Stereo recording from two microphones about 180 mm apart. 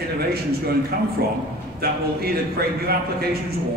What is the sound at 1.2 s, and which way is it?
A man's voice, 60° right (ahead or behind).